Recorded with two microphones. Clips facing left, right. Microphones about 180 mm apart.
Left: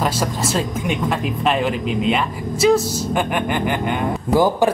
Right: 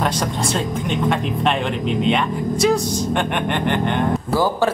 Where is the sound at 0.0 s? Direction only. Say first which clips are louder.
Even; 5° left (ahead or behind).